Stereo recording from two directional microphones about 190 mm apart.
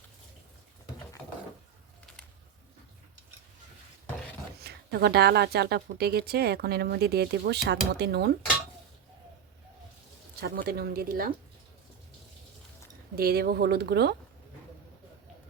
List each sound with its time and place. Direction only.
4.6 s a woman's voice: 55° right (ahead or behind)
10.4 s speech: 55° right (ahead or behind)
13.1 s a woman's voice: 55° right (ahead or behind)